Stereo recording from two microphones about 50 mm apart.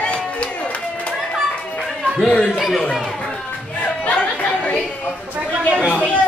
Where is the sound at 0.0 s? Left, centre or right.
Left.